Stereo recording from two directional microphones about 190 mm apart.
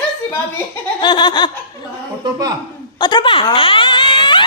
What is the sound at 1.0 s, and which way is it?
Laughter, 25° left (ahead or behind).